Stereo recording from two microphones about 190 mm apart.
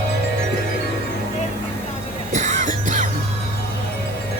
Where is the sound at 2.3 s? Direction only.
40° right (ahead or behind).